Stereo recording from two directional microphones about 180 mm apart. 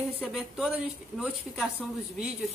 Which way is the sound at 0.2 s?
5° right (ahead or behind).